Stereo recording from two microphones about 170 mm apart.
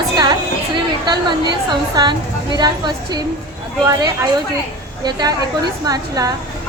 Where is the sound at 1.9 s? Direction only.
25° right (ahead or behind).